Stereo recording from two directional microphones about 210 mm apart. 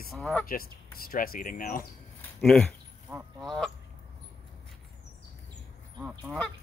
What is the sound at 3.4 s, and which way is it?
Speech, centre (ahead or behind).